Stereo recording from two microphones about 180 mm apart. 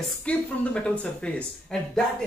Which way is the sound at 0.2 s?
5° left (ahead or behind).